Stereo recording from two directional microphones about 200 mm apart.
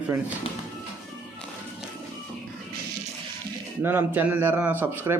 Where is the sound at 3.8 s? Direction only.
10° right (ahead or behind).